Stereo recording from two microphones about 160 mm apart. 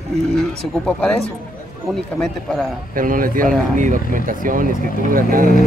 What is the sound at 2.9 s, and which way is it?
Speech, 60° right (ahead or behind).